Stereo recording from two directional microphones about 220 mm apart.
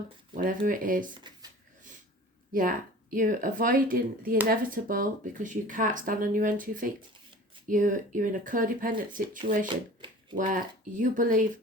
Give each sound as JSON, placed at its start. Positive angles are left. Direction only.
{"t": 0.3, "sound": "speech", "side_deg": -40}
{"t": 1.2, "sound": "a sound", "side_deg": -20}
{"t": 2.5, "sound": "speech", "side_deg": -40}
{"t": 9.6, "sound": "shuffling cards", "side_deg": -20}
{"t": 10.3, "sound": "speech", "side_deg": -35}